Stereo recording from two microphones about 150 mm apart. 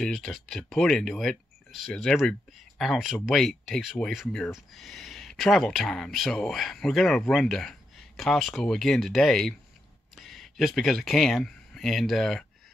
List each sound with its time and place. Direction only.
0.0 s speech: centre (ahead or behind)